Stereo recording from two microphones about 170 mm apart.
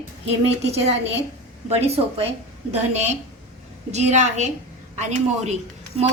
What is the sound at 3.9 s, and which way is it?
A woman's voice, 45° right (ahead or behind).